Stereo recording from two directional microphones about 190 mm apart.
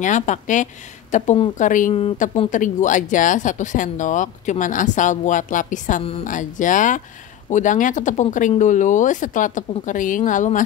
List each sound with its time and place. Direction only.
0.0 s speech: 40° left (ahead or behind)